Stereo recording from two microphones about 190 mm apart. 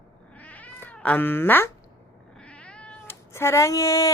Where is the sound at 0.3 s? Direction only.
10° left (ahead or behind).